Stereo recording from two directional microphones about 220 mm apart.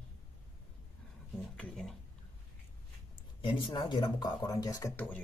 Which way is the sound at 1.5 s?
5° left (ahead or behind).